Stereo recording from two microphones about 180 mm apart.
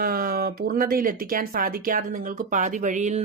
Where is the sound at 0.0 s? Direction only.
55° right (ahead or behind).